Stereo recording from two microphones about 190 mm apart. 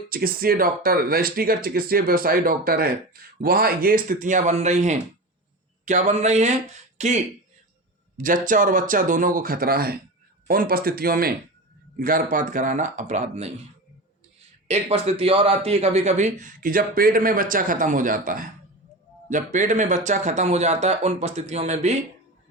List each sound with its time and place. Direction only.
0.1 s speech: 50° right (ahead or behind)
8.2 s speech: 45° right (ahead or behind)
14.7 s speech: 35° right (ahead or behind)